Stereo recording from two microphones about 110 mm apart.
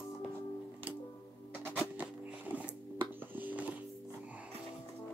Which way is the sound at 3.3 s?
15° right (ahead or behind).